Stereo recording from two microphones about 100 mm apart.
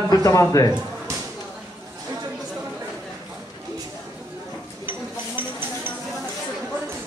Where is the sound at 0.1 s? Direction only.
35° left (ahead or behind).